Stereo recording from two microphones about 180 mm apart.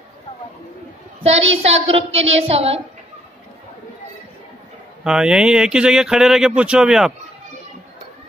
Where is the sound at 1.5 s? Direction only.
35° right (ahead or behind).